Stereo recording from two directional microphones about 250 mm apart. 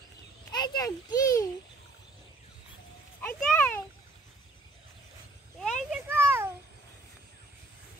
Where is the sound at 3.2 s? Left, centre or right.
Centre.